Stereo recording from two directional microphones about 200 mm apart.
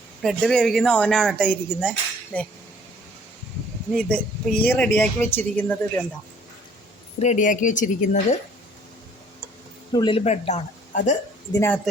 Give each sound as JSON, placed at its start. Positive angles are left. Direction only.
{"t": 0.2, "sound": "speech", "side_deg": 0}
{"t": 3.9, "sound": "speech", "side_deg": 5}
{"t": 7.2, "sound": "speech", "side_deg": 35}
{"t": 9.9, "sound": "speech", "side_deg": 25}
{"t": 11.5, "sound": "speech", "side_deg": 10}